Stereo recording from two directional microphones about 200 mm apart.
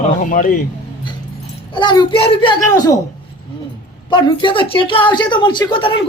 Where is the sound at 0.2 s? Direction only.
40° left (ahead or behind).